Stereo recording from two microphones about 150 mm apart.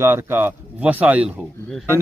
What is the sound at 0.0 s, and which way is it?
A man's voice, 15° right (ahead or behind).